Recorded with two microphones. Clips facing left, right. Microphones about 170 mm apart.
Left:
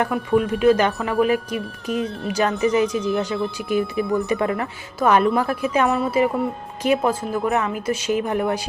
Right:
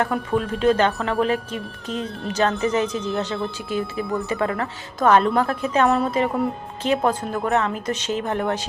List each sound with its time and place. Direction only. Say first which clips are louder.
0.0 s speech: left 3 dB; 5° left (ahead or behind)
4.9 s speech: even; 10° left (ahead or behind)